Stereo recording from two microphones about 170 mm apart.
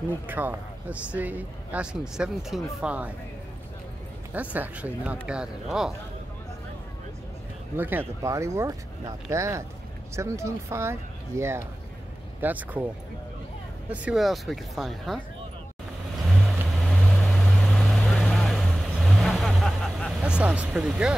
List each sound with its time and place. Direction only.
0.3 s speech: 10° right (ahead or behind)
4.3 s speech: 10° right (ahead or behind)
7.7 s speech: 10° right (ahead or behind)
13.8 s speech: 10° right (ahead or behind)
16.4 s vehicle: centre (ahead or behind)